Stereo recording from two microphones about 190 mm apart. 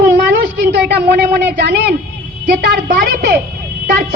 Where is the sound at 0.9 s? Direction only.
55° right (ahead or behind).